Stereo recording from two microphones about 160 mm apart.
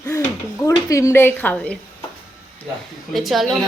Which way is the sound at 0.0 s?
20° left (ahead or behind).